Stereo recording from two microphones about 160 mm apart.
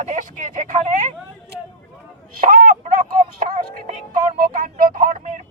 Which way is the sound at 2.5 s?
60° right (ahead or behind).